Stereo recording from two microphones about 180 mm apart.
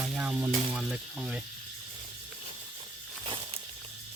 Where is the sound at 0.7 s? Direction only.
5° right (ahead or behind).